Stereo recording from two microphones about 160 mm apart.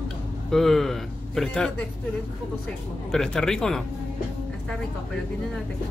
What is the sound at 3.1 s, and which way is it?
Speech, 5° left (ahead or behind).